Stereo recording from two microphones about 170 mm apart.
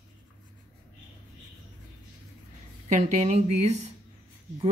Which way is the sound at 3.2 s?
40° right (ahead or behind).